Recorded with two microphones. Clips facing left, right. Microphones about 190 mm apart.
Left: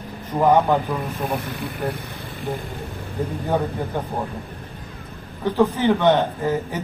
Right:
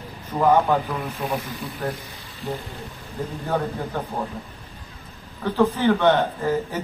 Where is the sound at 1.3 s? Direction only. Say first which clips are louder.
Left 2 dB; 60° left (ahead or behind).